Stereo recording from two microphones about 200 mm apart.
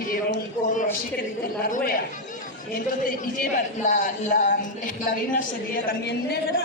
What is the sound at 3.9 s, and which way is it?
Speech, 40° left (ahead or behind).